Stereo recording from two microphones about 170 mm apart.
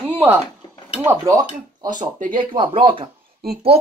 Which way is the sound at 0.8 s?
15° right (ahead or behind).